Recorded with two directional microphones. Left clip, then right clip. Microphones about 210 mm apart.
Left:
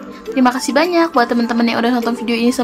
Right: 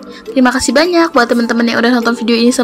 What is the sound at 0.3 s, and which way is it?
A woman's voice, 15° right (ahead or behind).